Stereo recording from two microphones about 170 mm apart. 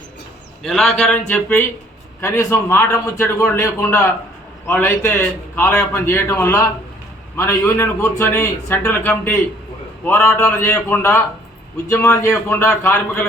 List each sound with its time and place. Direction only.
0.6 s a man's voice: centre (ahead or behind); by 12.9 s 15° left (ahead or behind)